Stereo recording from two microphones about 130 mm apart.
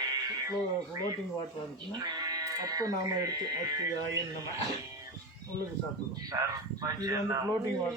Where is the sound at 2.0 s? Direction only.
30° right (ahead or behind).